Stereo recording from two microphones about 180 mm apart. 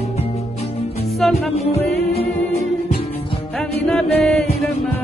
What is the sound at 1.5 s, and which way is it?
Music, 35° left (ahead or behind).